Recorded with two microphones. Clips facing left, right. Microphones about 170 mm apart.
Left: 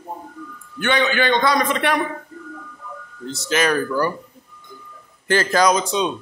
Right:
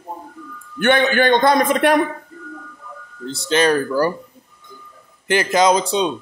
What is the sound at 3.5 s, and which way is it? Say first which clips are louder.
Speech: right 3 dB; 30° right (ahead or behind).